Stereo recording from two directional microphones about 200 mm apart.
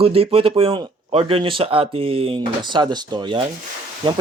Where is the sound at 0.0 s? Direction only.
30° right (ahead or behind).